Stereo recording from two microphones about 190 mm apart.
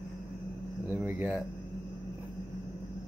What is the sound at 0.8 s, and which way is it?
Speech, 10° right (ahead or behind).